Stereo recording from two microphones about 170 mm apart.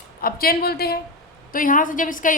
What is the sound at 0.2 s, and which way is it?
Speech, 60° left (ahead or behind).